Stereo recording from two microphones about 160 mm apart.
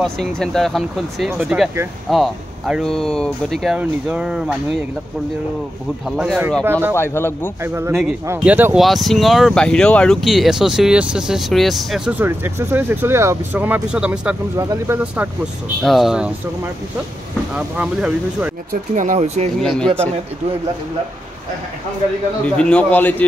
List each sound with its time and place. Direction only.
0.0 s speech: centre (ahead or behind)
6.0 s speech: 5° right (ahead or behind)
6.6 s speech: 15° right (ahead or behind)
7.0 s a man's voice: 15° left (ahead or behind)
7.6 s speech: 15° right (ahead or behind)
8.7 s speech: centre (ahead or behind); by 15.2 s 15° right (ahead or behind)
15.8 s speech: centre (ahead or behind)
17.6 s speech: 5° right (ahead or behind)
18.7 s speech: 55° right (ahead or behind)
19.6 s speech: centre (ahead or behind)
22.6 s a man's voice: 5° left (ahead or behind)